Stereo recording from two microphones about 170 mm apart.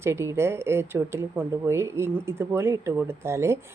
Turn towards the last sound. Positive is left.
turn(degrees=-15)  # may be behind; listen again after turning